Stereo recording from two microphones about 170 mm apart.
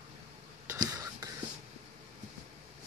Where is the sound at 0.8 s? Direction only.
20° right (ahead or behind).